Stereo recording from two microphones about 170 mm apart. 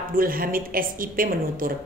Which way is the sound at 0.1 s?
55° right (ahead or behind).